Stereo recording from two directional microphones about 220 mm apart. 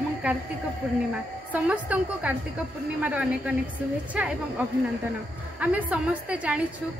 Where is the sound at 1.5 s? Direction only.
5° right (ahead or behind).